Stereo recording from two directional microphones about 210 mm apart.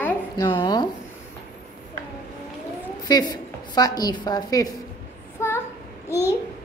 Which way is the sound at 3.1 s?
20° left (ahead or behind).